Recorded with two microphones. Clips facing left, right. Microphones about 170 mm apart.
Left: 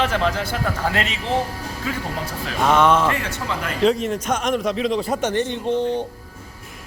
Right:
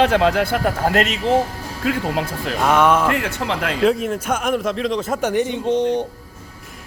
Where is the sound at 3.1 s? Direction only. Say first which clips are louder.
Right 4 dB; 60° right (ahead or behind); by 3.7 s 80° right.